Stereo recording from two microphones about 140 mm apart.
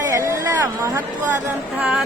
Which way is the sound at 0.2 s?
20° right (ahead or behind).